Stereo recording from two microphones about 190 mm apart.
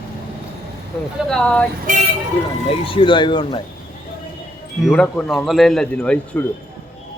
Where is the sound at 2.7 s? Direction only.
30° left (ahead or behind).